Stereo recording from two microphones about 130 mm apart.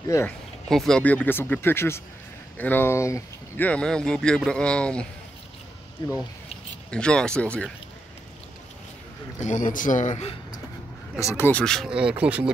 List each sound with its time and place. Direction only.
0.7 s speech: 5° left (ahead or behind); by 3.6 s 20° left (ahead or behind)
3.6 s speech: 5° left (ahead or behind)
6.0 s speech: 35° left (ahead or behind)
6.9 s speech: 5° left (ahead or behind)
9.4 s speech: 80° left
11.1 s speech: 20° left (ahead or behind)
11.6 s speech: 5° left (ahead or behind)
11.9 s speech: 10° right (ahead or behind)